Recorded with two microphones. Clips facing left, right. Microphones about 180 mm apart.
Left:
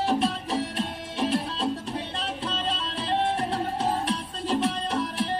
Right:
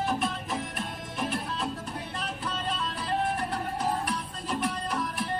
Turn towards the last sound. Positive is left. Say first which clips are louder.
# left 4 dB
turn(degrees=30)  # may be behind; listen again after turning